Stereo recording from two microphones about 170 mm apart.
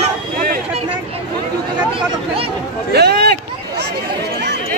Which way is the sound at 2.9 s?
75° right (ahead or behind).